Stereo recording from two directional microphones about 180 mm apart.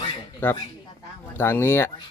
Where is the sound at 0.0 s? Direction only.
25° left (ahead or behind).